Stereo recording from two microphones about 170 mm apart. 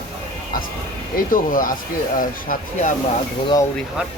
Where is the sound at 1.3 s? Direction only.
55° left (ahead or behind).